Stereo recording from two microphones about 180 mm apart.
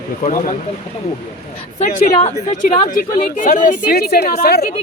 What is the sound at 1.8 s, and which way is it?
A woman's voice, 45° left (ahead or behind).